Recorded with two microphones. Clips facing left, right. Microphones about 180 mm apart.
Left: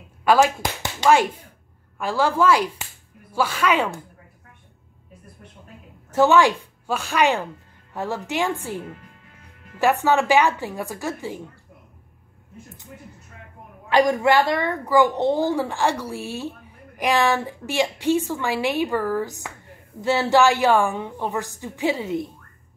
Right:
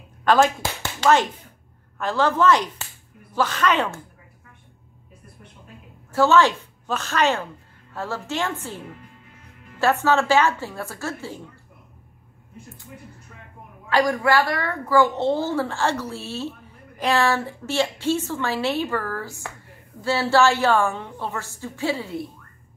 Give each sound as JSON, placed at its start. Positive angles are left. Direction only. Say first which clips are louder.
{"t": 0.2, "sound": "a sound", "louder": "left 1 dB", "side_deg": 10}
{"t": 2.0, "sound": "a woman's voice", "louder": "even", "side_deg": 10}
{"t": 6.1, "sound": "a woman's voice", "louder": "left 1 dB", "side_deg": 15}
{"t": 13.8, "sound": "a woman's voice", "louder": "left 2 dB", "side_deg": 20}